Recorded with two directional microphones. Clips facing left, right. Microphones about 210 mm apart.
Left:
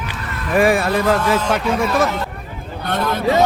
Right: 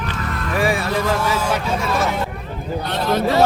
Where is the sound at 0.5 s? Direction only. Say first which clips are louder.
Left 6 dB; 55° left (ahead or behind).